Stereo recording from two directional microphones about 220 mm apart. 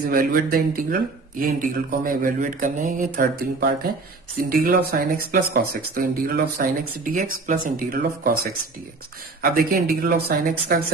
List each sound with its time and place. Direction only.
0.0 s speech: 40° right (ahead or behind)
9.4 s speech: 40° right (ahead or behind)